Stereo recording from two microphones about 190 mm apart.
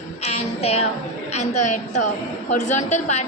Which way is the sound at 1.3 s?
40° left (ahead or behind).